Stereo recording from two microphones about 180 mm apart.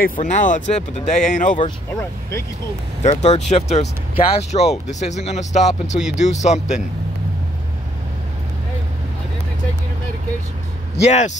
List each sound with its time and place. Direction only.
0.0 s speech: 45° left (ahead or behind)
3.0 s speech: 40° left (ahead or behind)
11.0 s speech: 40° left (ahead or behind)